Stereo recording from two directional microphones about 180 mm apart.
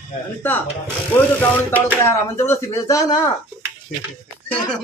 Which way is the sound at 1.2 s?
10° left (ahead or behind).